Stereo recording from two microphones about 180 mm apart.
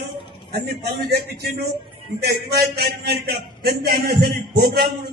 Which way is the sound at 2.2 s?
60° right (ahead or behind).